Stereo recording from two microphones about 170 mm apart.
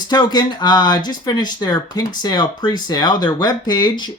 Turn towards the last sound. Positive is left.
turn(degrees=25)  # may be behind; listen again after turning